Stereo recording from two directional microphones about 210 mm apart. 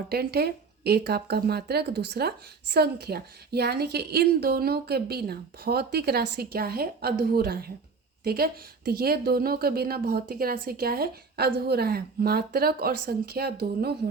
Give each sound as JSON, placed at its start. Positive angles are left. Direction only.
{"t": 0.1, "sound": "speech", "side_deg": -50}